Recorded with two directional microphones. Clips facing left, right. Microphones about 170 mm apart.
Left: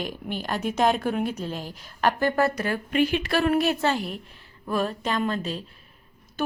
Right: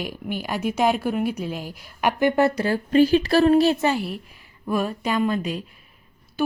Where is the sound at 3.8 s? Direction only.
10° right (ahead or behind).